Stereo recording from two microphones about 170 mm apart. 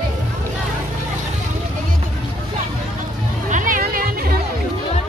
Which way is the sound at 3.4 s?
50° right (ahead or behind).